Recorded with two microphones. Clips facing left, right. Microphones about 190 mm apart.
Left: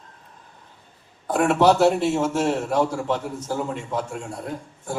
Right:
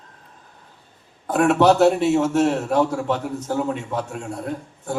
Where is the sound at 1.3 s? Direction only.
65° right (ahead or behind).